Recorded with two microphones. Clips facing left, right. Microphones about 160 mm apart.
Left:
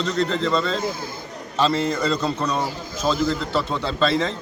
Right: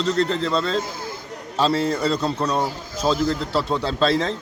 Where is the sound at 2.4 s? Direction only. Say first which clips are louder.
Right 1 dB; 30° right (ahead or behind).